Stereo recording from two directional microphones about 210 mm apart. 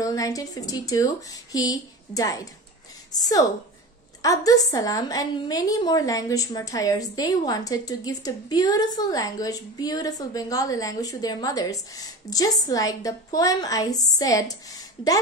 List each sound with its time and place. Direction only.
0.0 s a woman's voice: 15° left (ahead or behind)